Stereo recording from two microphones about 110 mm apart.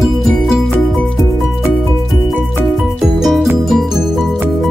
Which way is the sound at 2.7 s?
Centre (ahead or behind).